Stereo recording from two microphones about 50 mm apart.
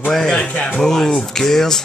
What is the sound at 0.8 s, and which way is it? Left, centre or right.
Speech, centre.